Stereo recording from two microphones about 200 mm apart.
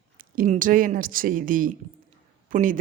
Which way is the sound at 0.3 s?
40° right (ahead or behind).